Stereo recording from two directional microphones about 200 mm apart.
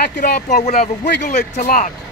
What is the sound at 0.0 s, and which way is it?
Speech, 50° left (ahead or behind).